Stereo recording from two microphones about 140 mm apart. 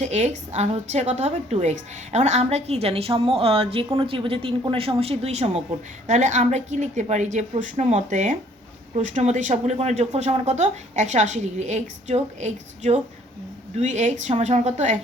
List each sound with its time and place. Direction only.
0.0 s a woman's voice: 55° right (ahead or behind)